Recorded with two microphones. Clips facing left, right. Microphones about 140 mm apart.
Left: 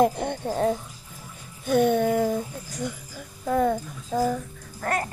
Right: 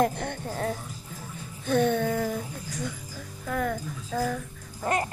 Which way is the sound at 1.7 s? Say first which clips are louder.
Left 3 dB; 15° left (ahead or behind).